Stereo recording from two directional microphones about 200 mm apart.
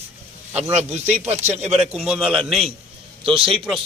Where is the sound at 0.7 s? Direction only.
35° right (ahead or behind).